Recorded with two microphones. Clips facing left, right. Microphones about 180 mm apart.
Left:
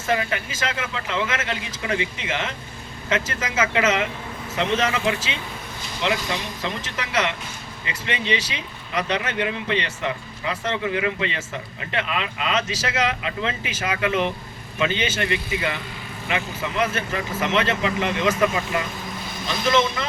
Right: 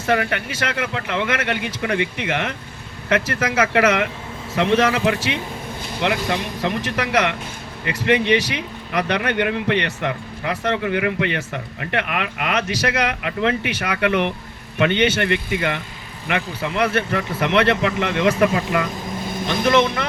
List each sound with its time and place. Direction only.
0.0 s speech: 65° right (ahead or behind)